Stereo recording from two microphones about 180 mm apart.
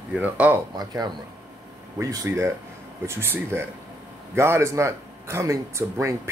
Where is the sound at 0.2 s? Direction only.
10° right (ahead or behind).